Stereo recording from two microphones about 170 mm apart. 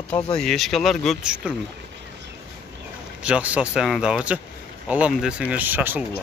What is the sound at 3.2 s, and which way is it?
Speech, 5° right (ahead or behind).